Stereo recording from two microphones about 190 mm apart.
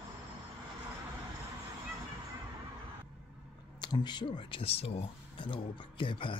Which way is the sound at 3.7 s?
25° left (ahead or behind).